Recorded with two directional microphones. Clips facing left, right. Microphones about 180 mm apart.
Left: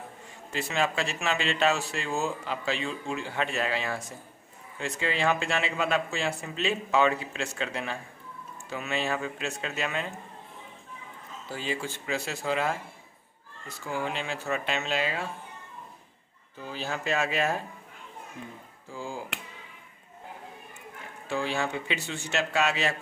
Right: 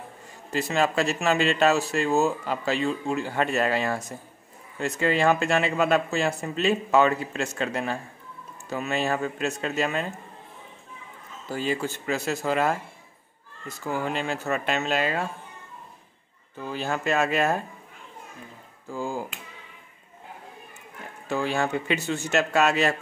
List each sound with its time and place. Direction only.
0.5 s speech: 40° right (ahead or behind)
11.5 s speech: 45° right (ahead or behind)
13.8 s speech: 45° right (ahead or behind)
16.5 s speech: 55° right (ahead or behind)
18.9 s speech: 45° right (ahead or behind)
21.3 s speech: 45° right (ahead or behind)